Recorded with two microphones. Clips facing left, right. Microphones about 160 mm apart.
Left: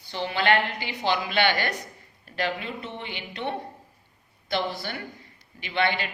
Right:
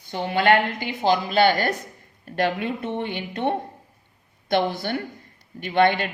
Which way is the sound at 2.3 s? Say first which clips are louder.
Right 6 dB; 55° right (ahead or behind).